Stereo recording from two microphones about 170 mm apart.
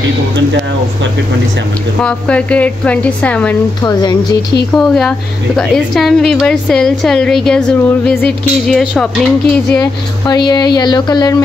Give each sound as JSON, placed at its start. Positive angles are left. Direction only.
{"t": 2.0, "sound": "a woman's voice", "side_deg": 5}
{"t": 4.7, "sound": "a woman's voice", "side_deg": 5}
{"t": 10.2, "sound": "speech", "side_deg": 25}